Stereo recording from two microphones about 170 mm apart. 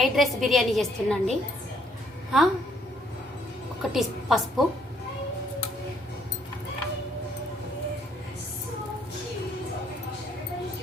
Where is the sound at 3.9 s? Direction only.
Centre (ahead or behind).